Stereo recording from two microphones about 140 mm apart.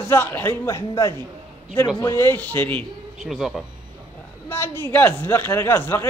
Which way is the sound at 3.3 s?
Centre (ahead or behind).